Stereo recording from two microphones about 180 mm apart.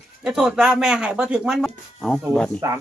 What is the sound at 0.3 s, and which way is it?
A woman's voice, 5° right (ahead or behind).